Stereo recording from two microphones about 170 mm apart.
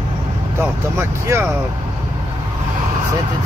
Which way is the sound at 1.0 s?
15° right (ahead or behind).